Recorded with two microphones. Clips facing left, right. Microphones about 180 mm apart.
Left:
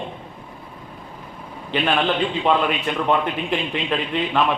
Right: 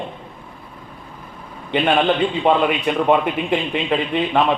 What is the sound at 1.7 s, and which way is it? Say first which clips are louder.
A man's voice: right 4 dB; 20° right (ahead or behind).